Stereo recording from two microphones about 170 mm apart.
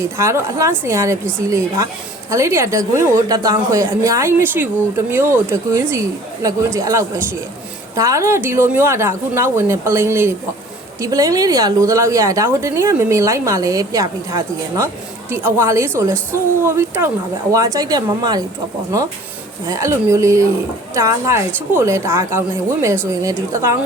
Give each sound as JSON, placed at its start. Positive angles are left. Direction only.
{"t": 0.0, "sound": "a woman's voice", "side_deg": -15}
{"t": 19.6, "sound": "a woman's voice", "side_deg": -15}